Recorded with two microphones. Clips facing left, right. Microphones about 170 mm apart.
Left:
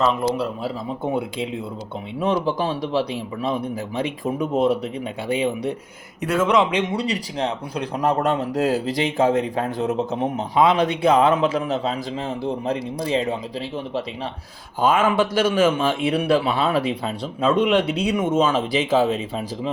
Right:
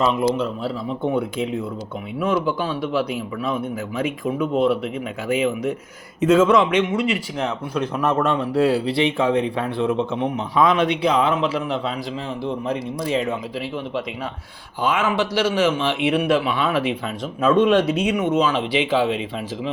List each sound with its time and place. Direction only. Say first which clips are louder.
2.1 s speech: even; 35° left (ahead or behind)
6.2 s a man's voice: right 5 dB; 10° left (ahead or behind)
6.6 s speech: right 2 dB; 30° left (ahead or behind)
10.5 s a man's voice: left 1 dB; 30° left (ahead or behind)
10.8 s speech: left 2 dB; 50° left (ahead or behind)
13.0 s speech: even; 35° left (ahead or behind)
14.8 s speech: left 3 dB; 50° left (ahead or behind); by 18.1 s 30° left (ahead or behind)
18.2 s speech: even; 50° left (ahead or behind)